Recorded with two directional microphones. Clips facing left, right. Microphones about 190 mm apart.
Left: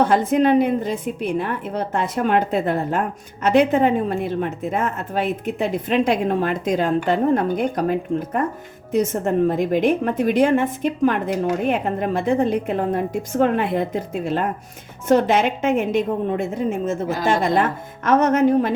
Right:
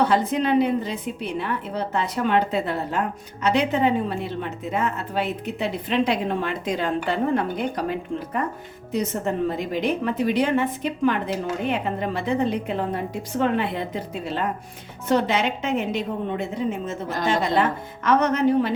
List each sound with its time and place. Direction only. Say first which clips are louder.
0.1 s a woman's voice: left 4 dB; 50° left (ahead or behind)